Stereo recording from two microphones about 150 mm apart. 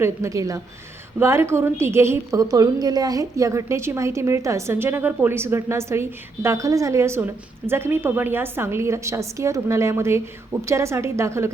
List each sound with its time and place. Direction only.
0.0 s a woman's voice: 20° right (ahead or behind)